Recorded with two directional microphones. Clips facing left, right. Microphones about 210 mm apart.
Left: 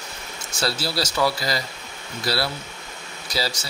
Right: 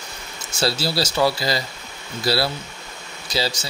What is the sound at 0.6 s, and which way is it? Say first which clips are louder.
A man's voice: right 3 dB; 25° right (ahead or behind).